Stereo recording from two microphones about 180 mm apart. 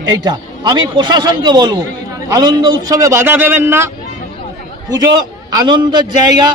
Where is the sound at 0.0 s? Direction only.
25° right (ahead or behind).